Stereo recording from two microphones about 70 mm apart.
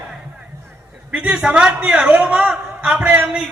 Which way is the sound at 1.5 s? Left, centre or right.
Centre.